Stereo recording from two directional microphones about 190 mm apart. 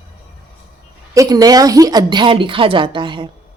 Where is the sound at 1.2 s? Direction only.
20° right (ahead or behind).